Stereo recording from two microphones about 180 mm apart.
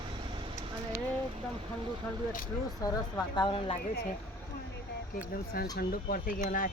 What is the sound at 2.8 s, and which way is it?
Speech, 20° left (ahead or behind).